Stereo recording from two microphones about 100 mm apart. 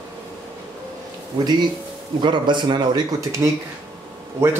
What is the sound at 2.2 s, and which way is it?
Speech, 50° right (ahead or behind).